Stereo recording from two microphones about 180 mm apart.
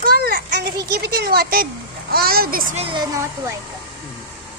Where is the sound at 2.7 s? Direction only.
30° right (ahead or behind).